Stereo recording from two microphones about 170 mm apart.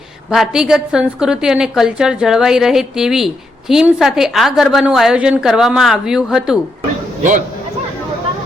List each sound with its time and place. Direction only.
0.3 s a woman's voice: 5° right (ahead or behind)
7.2 s a man's voice: 50° right (ahead or behind)